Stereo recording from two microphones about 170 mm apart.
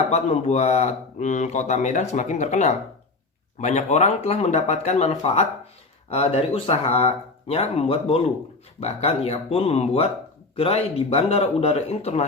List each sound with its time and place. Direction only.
0.1 s speech: 40° left (ahead or behind)